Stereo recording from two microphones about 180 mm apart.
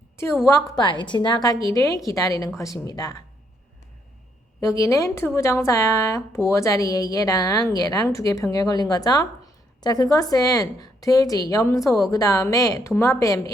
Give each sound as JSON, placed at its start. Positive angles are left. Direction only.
{"t": 0.2, "sound": "a woman's voice", "side_deg": 15}
{"t": 4.6, "sound": "a woman's voice", "side_deg": 15}